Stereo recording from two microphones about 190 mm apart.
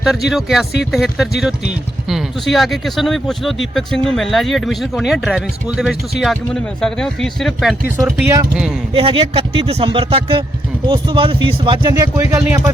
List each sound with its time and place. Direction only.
0.0 s speech: centre (ahead or behind)
8.0 s speech: 15° right (ahead or behind)
9.0 s speech: 30° right (ahead or behind)